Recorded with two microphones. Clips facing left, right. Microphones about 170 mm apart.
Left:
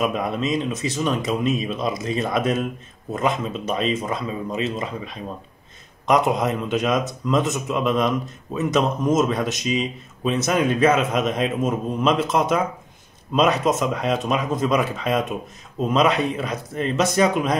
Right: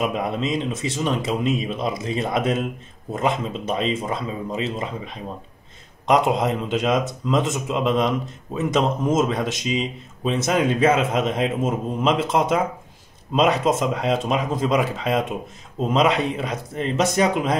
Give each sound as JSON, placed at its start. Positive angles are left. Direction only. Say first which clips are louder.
{"t": 0.1, "sound": "speech", "louder": "left 1 dB", "side_deg": -25}